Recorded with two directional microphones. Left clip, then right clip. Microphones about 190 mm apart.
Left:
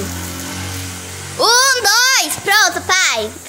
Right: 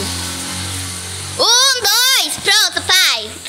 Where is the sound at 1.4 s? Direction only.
5° left (ahead or behind).